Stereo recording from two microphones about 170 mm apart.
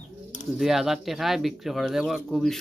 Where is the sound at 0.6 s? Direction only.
Centre (ahead or behind).